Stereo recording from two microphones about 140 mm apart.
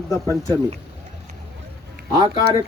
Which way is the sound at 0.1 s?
25° left (ahead or behind).